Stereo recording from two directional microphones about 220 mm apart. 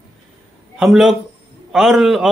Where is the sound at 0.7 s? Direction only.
Centre (ahead or behind).